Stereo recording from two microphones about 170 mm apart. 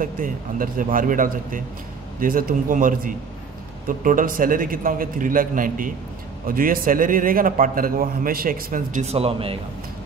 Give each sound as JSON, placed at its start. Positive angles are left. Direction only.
{"t": 0.0, "sound": "a man's voice", "side_deg": -55}